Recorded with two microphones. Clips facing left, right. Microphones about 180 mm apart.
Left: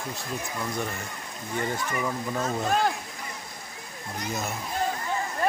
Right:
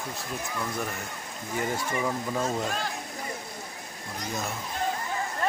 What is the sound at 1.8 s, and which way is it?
Speech, 30° right (ahead or behind).